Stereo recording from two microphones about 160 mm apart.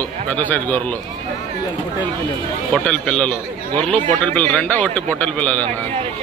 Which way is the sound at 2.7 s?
5° left (ahead or behind).